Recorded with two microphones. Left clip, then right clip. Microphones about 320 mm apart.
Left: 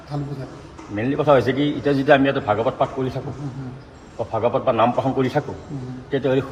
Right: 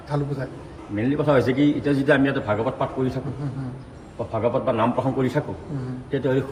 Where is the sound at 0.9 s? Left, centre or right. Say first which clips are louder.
Left 3 dB; centre.